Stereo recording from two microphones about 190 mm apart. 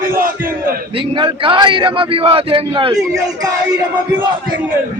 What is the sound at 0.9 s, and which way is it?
A man's voice, 25° right (ahead or behind).